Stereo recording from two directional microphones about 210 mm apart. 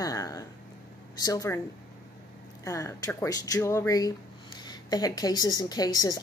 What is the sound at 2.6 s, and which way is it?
A woman's voice, 15° left (ahead or behind).